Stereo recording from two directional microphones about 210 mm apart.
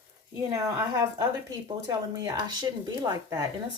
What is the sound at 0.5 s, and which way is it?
Speech, 15° right (ahead or behind).